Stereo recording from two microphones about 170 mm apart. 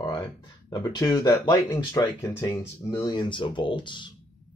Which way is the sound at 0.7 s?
25° left (ahead or behind).